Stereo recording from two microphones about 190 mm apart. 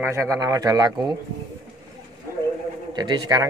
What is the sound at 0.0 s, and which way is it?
Speech, 15° right (ahead or behind).